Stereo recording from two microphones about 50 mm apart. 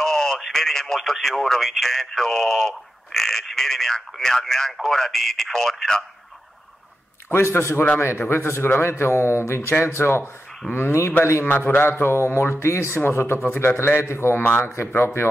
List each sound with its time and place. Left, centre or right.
0.0 s radio: centre
0.4 s speech: centre
7.2 s a man's voice: left
9.8 s a man's voice: left
12.0 s a man's voice: left
14.9 s a man's voice: left